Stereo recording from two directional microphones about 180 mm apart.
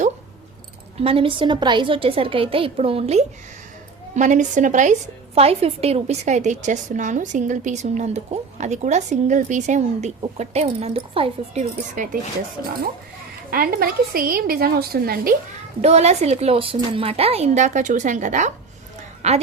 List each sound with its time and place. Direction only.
0.9 s a woman's voice: 30° right (ahead or behind)
12.0 s speech: 45° right (ahead or behind)
13.5 s a woman's voice: 55° right (ahead or behind)
15.8 s a woman's voice: 35° right (ahead or behind)